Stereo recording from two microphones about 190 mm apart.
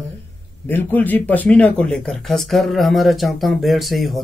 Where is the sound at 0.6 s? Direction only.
10° left (ahead or behind).